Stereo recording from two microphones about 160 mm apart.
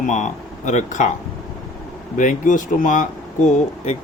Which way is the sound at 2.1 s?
55° left (ahead or behind).